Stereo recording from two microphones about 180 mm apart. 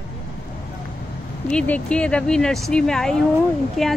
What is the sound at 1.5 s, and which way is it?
Speech, 5° left (ahead or behind).